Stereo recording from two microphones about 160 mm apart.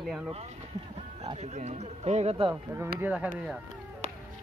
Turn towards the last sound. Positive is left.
turn(degrees=-10)  # may be behind; listen again after turning